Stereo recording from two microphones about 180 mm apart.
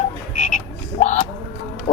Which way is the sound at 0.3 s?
45° left (ahead or behind).